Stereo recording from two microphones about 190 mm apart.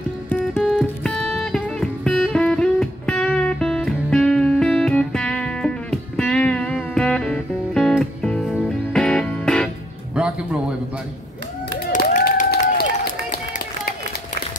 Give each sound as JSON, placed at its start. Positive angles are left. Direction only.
{"t": 0.3, "sound": "music", "side_deg": 10}
{"t": 10.1, "sound": "music", "side_deg": -5}
{"t": 11.9, "sound": "a sound", "side_deg": 50}